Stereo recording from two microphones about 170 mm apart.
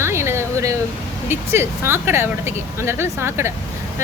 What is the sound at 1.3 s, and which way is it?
Speech, 15° right (ahead or behind).